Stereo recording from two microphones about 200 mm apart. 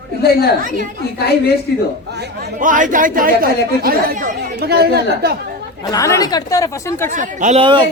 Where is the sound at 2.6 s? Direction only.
40° right (ahead or behind).